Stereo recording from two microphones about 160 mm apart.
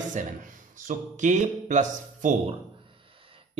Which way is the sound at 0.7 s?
50° right (ahead or behind).